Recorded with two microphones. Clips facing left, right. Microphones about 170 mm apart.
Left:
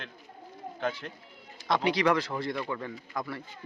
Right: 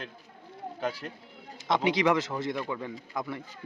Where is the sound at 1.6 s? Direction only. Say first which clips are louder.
Right 1 dB; 20° right (ahead or behind).